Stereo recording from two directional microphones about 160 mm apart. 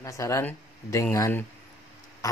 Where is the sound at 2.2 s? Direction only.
20° left (ahead or behind).